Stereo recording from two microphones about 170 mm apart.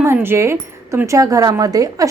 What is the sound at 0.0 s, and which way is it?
Speech, 15° right (ahead or behind).